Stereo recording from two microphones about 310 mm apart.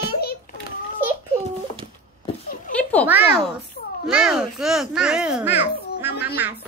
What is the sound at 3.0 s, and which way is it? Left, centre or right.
A child's voice, centre.